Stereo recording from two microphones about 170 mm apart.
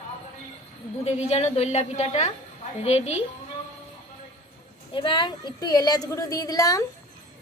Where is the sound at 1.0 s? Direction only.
40° left (ahead or behind).